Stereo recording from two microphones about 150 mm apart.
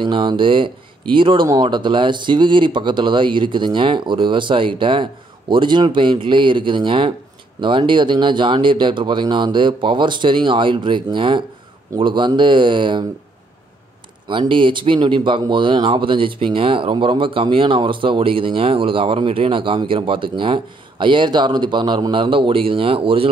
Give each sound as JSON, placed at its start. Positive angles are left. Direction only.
{"t": 0.0, "sound": "speech", "side_deg": -30}
{"t": 14.2, "sound": "speech", "side_deg": -30}